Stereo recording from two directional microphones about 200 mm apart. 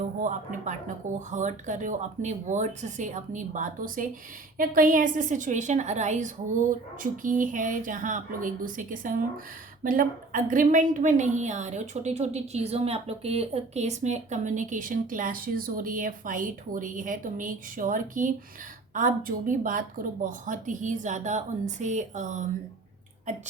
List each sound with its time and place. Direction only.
0.0 s a woman's voice: 40° right (ahead or behind)